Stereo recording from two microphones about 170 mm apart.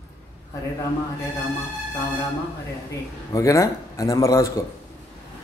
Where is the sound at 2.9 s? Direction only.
20° left (ahead or behind).